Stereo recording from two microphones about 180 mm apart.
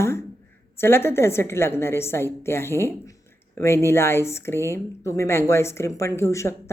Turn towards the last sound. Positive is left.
turn(degrees=15)  # may be behind; listen again after turning